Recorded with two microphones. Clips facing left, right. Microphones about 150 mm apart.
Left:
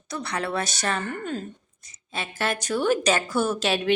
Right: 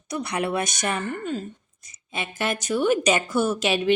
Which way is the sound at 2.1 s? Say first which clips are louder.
Right 1 dB; 15° right (ahead or behind).